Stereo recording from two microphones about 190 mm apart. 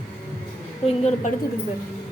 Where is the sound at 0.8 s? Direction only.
35° left (ahead or behind).